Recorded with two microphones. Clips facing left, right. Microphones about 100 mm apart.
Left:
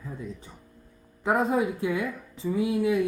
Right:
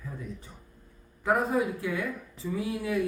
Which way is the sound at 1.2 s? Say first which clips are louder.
Left 2 dB; 25° left (ahead or behind).